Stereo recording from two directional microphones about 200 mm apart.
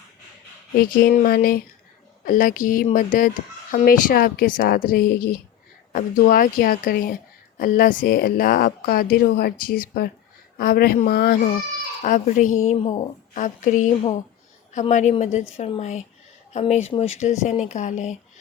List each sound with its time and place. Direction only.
0.8 s speech: 50° left (ahead or behind)
12.0 s a woman's voice: 40° left (ahead or behind)